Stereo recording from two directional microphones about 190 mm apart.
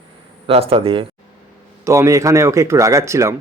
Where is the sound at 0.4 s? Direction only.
30° right (ahead or behind).